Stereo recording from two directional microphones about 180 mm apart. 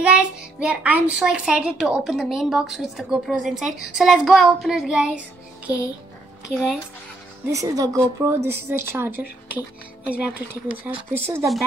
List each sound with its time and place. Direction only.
0.0 s a child's voice: 5° right (ahead or behind)
6.5 s a child's voice: 5° right (ahead or behind)
7.5 s a woman's voice: 20° right (ahead or behind)